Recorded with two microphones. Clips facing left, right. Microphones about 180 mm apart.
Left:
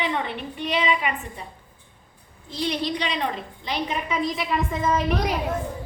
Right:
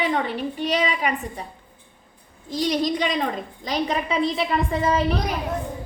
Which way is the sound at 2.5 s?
45° right (ahead or behind).